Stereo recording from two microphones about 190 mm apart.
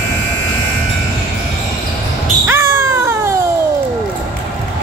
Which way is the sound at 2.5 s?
15° right (ahead or behind).